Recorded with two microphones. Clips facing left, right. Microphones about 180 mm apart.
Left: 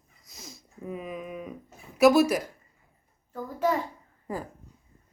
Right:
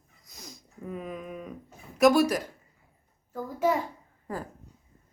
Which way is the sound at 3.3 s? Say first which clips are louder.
Right 1 dB; 10° right (ahead or behind).